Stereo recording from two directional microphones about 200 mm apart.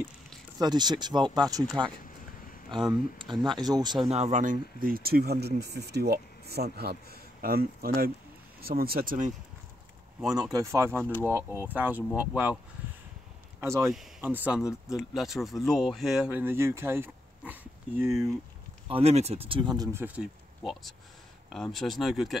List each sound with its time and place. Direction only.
0.6 s speech: 20° right (ahead or behind)
3.4 s speech: 20° right (ahead or behind); by 9.3 s 45° right (ahead or behind)
10.5 s speech: 15° right (ahead or behind)
13.6 s speech: 15° right (ahead or behind)
14.6 s speech: 15° left (ahead or behind)
15.0 s speech: centre (ahead or behind)
18.9 s speech: 30° right (ahead or behind); by 22.4 s centre (ahead or behind)